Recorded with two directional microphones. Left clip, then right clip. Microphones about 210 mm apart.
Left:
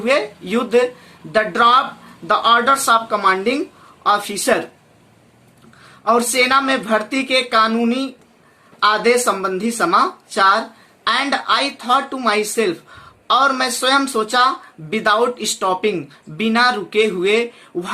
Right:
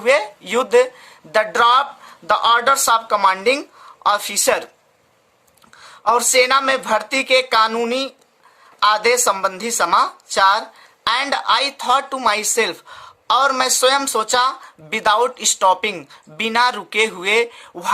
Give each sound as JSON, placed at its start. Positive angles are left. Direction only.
{"t": 0.0, "sound": "a woman's voice", "side_deg": -40}
{"t": 6.3, "sound": "a woman's voice", "side_deg": -45}